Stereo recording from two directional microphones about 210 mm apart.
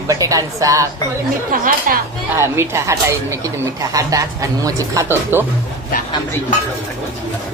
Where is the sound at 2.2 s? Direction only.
10° right (ahead or behind).